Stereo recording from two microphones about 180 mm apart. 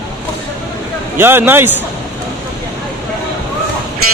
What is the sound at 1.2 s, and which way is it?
Speech, 10° right (ahead or behind).